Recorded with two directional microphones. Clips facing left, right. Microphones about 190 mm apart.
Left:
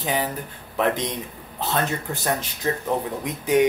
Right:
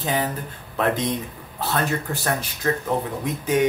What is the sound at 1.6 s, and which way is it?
Speech, 20° left (ahead or behind).